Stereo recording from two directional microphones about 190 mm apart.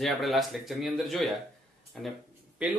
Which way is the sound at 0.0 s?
Centre (ahead or behind).